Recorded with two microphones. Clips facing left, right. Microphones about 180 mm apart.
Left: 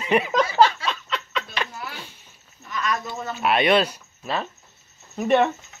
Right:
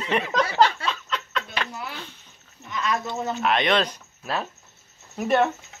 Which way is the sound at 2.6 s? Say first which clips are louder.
Right 1 dB; 25° right (ahead or behind).